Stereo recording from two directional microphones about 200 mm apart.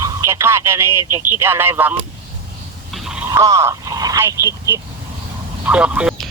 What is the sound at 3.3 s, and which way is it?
Speech, 15° right (ahead or behind).